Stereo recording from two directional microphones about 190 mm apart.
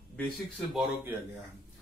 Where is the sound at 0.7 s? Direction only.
10° right (ahead or behind).